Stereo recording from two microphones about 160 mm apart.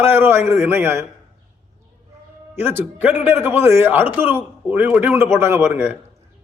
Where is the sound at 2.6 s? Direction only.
15° right (ahead or behind).